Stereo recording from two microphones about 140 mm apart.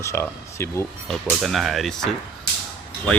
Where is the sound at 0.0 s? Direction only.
20° left (ahead or behind).